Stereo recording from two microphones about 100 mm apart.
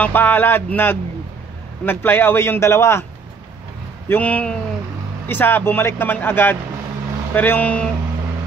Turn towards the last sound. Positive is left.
turn(degrees=15)  # may be behind; listen again after turning